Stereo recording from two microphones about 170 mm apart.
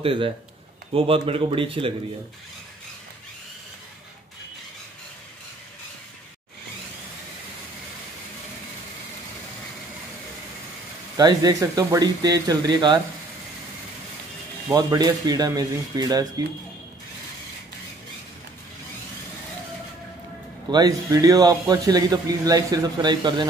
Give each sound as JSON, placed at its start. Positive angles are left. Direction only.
{"t": 0.0, "sound": "speech", "side_deg": -30}
{"t": 11.1, "sound": "speech", "side_deg": -25}
{"t": 14.7, "sound": "speech", "side_deg": -20}
{"t": 20.7, "sound": "speech", "side_deg": -25}